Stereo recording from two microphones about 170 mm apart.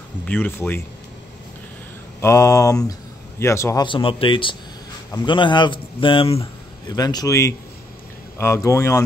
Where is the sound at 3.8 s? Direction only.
30° left (ahead or behind).